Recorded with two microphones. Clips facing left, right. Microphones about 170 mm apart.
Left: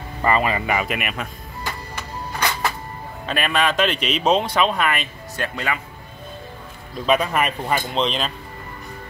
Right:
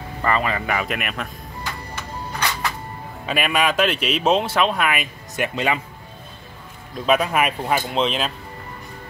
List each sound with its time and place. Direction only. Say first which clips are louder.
0.2 s speech: left 2 dB; 15° left (ahead or behind)
3.3 s speech: even; 5° right (ahead or behind)
5.3 s speech: right 4 dB; 20° right (ahead or behind)
7.1 s speech: right 1 dB; 5° right (ahead or behind)